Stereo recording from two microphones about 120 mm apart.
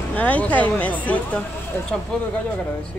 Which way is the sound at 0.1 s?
10° left (ahead or behind).